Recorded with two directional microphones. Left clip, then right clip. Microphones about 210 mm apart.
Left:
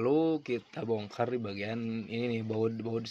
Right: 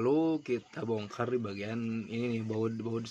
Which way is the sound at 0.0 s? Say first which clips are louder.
Left 1 dB; 15° left (ahead or behind).